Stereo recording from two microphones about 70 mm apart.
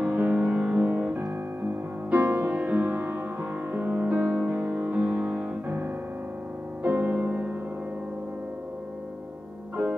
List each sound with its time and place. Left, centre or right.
0.1 s music: right
2.0 s music: right
6.8 s music: right